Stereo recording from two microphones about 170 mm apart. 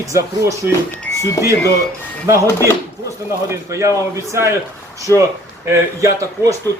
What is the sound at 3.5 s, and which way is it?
A man's voice, 15° right (ahead or behind).